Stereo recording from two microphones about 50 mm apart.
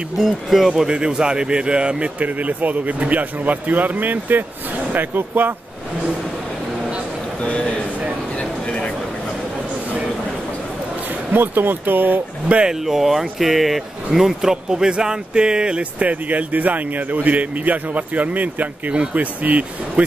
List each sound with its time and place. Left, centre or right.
0.2 s speech: centre; by 2.0 s right
2.1 s speech: right
8.4 s a sound: left
11.3 s speech: right
12.4 s speech: right
12.8 s speech: centre; by 20.1 s right